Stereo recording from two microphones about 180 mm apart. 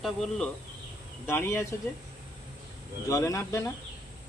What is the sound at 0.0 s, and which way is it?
Speech, 5° left (ahead or behind).